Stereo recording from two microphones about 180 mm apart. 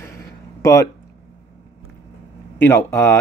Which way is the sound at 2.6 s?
15° left (ahead or behind).